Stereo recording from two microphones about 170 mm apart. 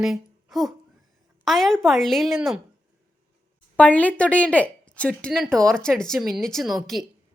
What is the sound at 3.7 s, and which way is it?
Speech, 10° left (ahead or behind).